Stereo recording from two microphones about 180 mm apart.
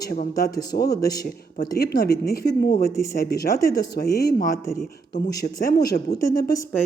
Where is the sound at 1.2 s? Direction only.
60° left (ahead or behind).